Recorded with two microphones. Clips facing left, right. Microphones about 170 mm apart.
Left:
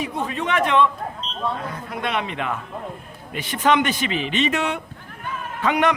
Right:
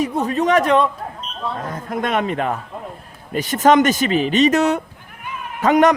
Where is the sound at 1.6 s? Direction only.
45° right (ahead or behind).